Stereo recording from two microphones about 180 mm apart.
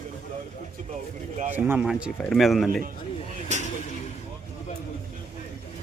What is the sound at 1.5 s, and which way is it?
Speech, 10° right (ahead or behind).